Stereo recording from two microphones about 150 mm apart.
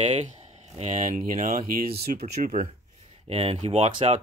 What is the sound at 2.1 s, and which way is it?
Speech, 80° right.